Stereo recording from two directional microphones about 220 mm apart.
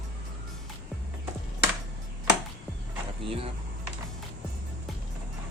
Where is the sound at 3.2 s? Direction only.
25° right (ahead or behind).